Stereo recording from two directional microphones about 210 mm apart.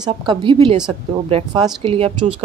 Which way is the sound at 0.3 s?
25° right (ahead or behind).